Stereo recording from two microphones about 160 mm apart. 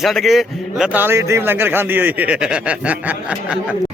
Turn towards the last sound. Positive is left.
turn(degrees=-5)  # may be behind; listen again after turning